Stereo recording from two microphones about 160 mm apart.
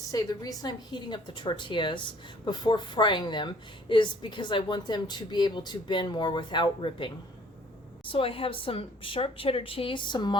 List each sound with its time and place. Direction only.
0.1 s a woman's voice: 20° left (ahead or behind)